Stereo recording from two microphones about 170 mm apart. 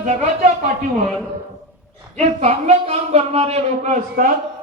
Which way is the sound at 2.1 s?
45° right (ahead or behind).